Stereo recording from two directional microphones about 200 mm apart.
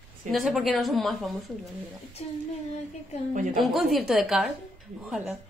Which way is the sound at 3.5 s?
Centre (ahead or behind).